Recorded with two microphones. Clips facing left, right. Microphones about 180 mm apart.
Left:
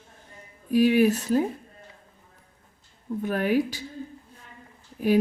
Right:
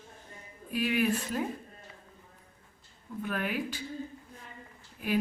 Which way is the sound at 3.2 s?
40° left (ahead or behind).